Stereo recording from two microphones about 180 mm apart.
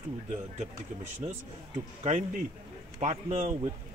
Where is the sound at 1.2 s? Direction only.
25° right (ahead or behind).